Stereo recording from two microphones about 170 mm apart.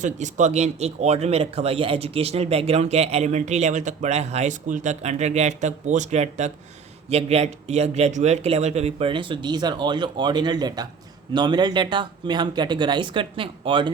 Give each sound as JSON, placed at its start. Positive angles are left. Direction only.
{"t": 0.0, "sound": "speech", "side_deg": -45}